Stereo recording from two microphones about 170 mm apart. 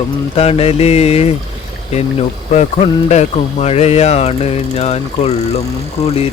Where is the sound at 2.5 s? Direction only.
40° left (ahead or behind).